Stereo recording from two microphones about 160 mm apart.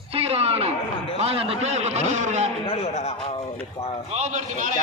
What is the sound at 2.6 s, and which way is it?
Speech, 40° left (ahead or behind).